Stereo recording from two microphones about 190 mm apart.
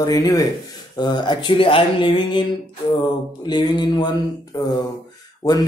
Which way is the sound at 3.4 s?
25° left (ahead or behind).